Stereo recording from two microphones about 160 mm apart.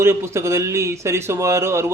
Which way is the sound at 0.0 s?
15° right (ahead or behind).